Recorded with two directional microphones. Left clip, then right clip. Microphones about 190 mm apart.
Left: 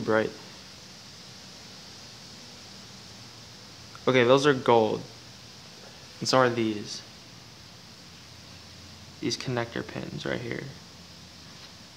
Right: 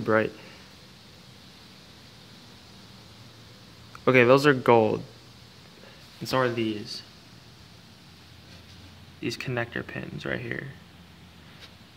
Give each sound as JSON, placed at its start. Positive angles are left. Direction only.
{"t": 0.0, "sound": "speech", "side_deg": -15}
{"t": 4.0, "sound": "speech", "side_deg": -20}
{"t": 6.2, "sound": "speech", "side_deg": 10}
{"t": 9.2, "sound": "speech", "side_deg": 5}